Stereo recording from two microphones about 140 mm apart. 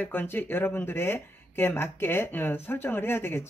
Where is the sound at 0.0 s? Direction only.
15° left (ahead or behind).